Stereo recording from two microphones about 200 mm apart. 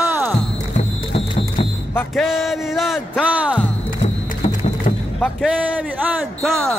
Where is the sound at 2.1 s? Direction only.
Centre (ahead or behind).